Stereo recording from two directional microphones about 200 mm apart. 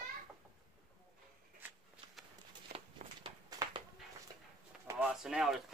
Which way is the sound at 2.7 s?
25° right (ahead or behind).